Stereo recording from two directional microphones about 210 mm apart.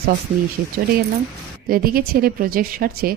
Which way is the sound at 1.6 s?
45° right (ahead or behind).